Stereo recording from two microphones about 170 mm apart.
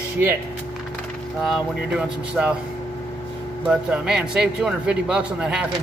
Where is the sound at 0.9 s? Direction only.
Centre (ahead or behind).